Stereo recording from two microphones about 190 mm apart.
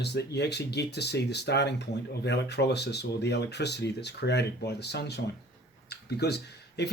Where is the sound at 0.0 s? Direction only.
60° left (ahead or behind).